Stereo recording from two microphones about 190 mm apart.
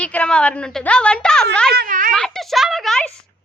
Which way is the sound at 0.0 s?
5° left (ahead or behind).